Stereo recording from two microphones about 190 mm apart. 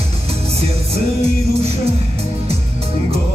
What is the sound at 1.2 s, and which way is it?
Music, 30° right (ahead or behind).